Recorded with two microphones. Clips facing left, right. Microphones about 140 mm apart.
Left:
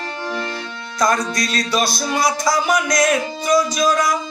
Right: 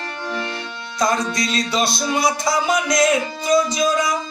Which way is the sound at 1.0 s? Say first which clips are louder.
Left 1 dB; 25° right (ahead or behind).